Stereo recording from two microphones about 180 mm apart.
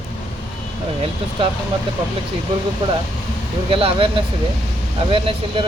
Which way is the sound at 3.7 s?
30° right (ahead or behind).